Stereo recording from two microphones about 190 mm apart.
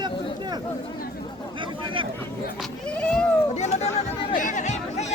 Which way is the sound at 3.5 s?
35° left (ahead or behind).